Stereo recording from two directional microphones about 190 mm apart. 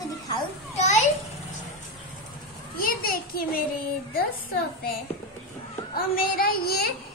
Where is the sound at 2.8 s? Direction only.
50° left (ahead or behind).